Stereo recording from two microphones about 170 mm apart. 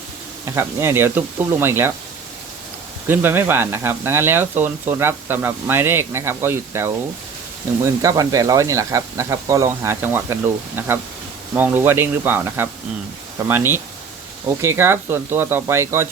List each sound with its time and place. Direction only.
0.4 s speech: 15° right (ahead or behind)
3.1 s speech: 10° right (ahead or behind)